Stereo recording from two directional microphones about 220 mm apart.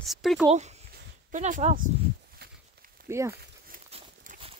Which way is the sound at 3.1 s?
10° right (ahead or behind).